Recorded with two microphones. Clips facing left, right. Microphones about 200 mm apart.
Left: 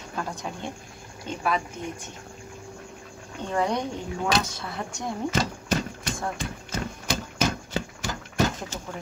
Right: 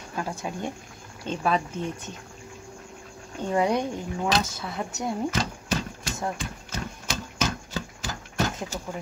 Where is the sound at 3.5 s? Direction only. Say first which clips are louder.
Right 2 dB; 10° right (ahead or behind).